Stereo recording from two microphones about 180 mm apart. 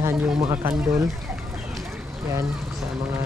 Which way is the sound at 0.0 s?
25° right (ahead or behind).